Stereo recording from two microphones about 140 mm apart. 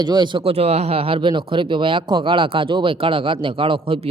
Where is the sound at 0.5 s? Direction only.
50° right (ahead or behind).